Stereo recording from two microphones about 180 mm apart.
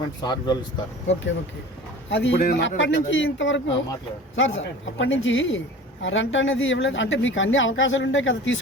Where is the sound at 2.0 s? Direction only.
90° left.